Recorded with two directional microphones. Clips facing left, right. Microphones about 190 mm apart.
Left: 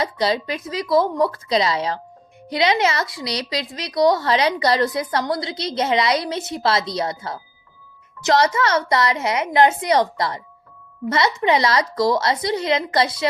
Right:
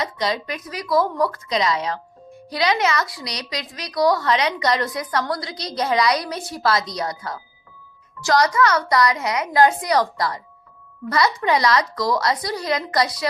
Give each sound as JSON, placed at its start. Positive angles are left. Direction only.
{"t": 0.0, "sound": "a woman's voice", "side_deg": 30}